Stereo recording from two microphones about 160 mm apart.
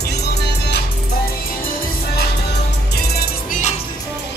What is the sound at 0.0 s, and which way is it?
Music, 90° left.